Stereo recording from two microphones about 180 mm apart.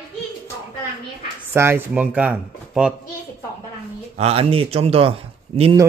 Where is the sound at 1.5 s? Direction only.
15° right (ahead or behind).